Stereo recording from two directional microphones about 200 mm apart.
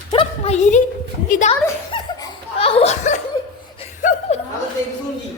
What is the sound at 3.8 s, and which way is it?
Chuckle, 35° left (ahead or behind).